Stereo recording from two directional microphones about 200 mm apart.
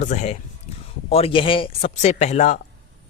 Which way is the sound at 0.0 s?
35° left (ahead or behind).